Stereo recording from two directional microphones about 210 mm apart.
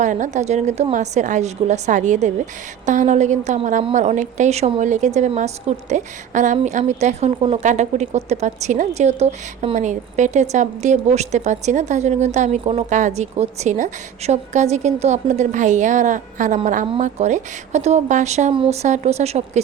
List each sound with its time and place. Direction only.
0.0 s speech: 35° right (ahead or behind)